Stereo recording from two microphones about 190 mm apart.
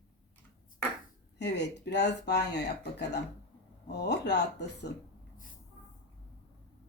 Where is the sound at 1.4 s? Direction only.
65° left (ahead or behind).